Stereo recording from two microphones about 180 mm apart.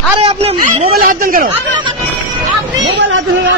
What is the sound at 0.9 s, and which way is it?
Speech, 50° right (ahead or behind).